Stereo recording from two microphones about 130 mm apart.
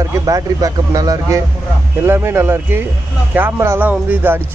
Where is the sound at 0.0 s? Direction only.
25° right (ahead or behind).